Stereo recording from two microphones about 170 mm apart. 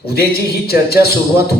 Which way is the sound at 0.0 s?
65° left (ahead or behind).